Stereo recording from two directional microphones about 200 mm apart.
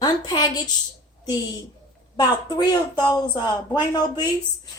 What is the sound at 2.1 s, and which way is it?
A woman's voice, 20° left (ahead or behind).